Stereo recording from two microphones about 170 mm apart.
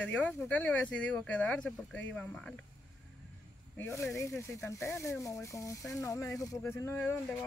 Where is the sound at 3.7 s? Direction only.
15° left (ahead or behind).